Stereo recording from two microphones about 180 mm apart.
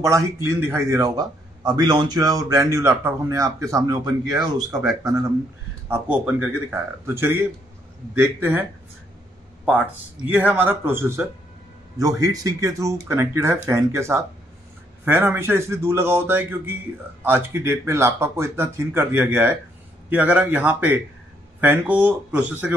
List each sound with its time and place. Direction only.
0.0 s a man's voice: 15° right (ahead or behind)
10.2 s a man's voice: 10° right (ahead or behind)